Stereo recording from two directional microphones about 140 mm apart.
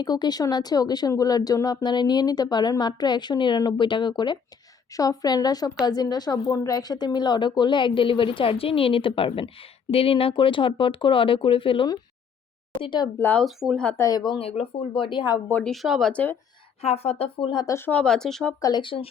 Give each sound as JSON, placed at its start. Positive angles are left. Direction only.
{"t": 0.0, "sound": "a woman's voice", "side_deg": 30}
{"t": 13.1, "sound": "speech", "side_deg": 15}
{"t": 13.4, "sound": "speech", "side_deg": 0}
{"t": 13.8, "sound": "a woman's voice", "side_deg": 20}
{"t": 15.4, "sound": "speech", "side_deg": 15}
{"t": 15.7, "sound": "speech", "side_deg": 0}
{"t": 16.8, "sound": "speech", "side_deg": 45}
{"t": 17.7, "sound": "speech", "side_deg": 10}
{"t": 18.6, "sound": "a woman's voice", "side_deg": 35}